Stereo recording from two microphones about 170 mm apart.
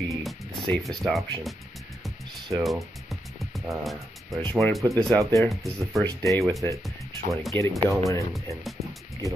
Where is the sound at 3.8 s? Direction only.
Centre (ahead or behind).